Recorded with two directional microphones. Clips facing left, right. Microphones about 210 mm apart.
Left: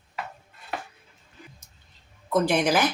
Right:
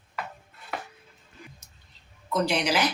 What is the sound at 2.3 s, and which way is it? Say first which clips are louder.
Speech: left 4 dB; 50° left (ahead or behind).